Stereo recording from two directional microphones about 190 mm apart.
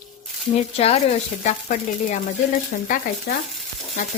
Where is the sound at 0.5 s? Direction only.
35° left (ahead or behind).